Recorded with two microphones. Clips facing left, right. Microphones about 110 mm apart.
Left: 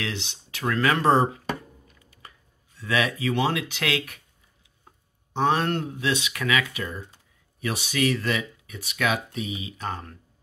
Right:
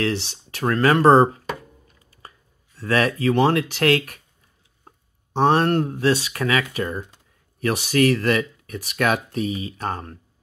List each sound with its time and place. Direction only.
0.0 s speech: 45° right (ahead or behind)
1.9 s a sound: 35° right (ahead or behind)
5.4 s speech: 40° right (ahead or behind)